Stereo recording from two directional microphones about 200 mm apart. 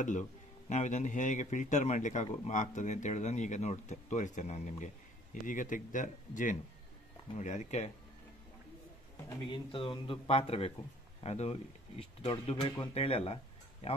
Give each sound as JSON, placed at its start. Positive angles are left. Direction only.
{"t": 0.7, "sound": "a man's voice", "side_deg": 35}
{"t": 9.5, "sound": "speech", "side_deg": 25}